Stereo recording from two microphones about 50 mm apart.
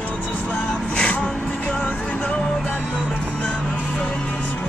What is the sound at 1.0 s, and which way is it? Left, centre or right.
Music, centre.